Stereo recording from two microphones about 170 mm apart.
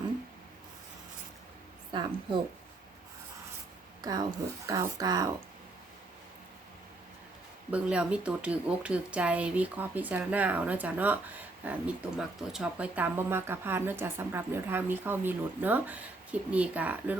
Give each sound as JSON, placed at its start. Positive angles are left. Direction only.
{"t": 1.9, "sound": "a woman's voice", "side_deg": -25}
{"t": 4.0, "sound": "speech", "side_deg": -25}
{"t": 7.7, "sound": "a woman's voice", "side_deg": -5}